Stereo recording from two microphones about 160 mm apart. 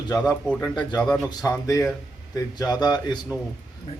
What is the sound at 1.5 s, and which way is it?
Speech, 20° left (ahead or behind).